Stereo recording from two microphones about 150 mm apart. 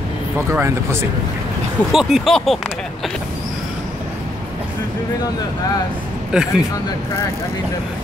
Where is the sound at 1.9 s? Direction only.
Centre (ahead or behind).